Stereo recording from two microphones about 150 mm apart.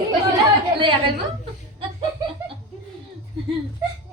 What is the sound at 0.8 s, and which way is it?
Speech, 35° right (ahead or behind).